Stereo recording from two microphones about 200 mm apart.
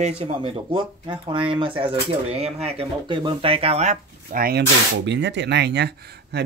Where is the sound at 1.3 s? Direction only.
25° right (ahead or behind).